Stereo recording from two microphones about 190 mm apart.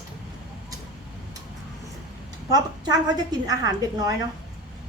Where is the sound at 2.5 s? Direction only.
20° right (ahead or behind).